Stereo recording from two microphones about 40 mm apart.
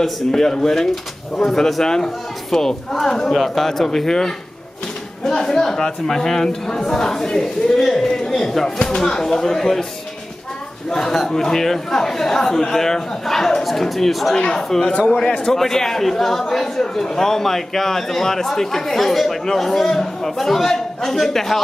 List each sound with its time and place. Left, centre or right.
0.3 s a man's voice: centre
10.9 s a man's voice: centre
14.3 s a man's voice: centre
14.9 s speech: left
15.1 s a man's voice: centre